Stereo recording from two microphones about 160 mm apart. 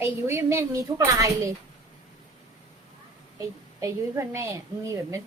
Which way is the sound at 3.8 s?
15° right (ahead or behind).